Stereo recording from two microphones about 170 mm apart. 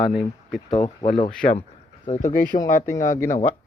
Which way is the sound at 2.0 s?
50° left (ahead or behind).